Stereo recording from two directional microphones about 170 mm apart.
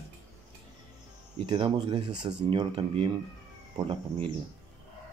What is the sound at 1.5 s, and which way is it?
Speech, 30° right (ahead or behind).